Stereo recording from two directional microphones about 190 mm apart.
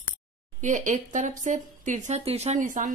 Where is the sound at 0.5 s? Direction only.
40° right (ahead or behind).